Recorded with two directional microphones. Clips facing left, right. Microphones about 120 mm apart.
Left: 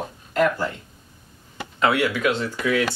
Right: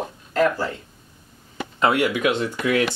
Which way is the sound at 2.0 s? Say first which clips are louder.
Right 1 dB; 15° right (ahead or behind).